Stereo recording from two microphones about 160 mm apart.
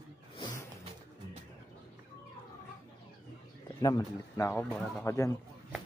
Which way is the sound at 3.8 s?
20° left (ahead or behind).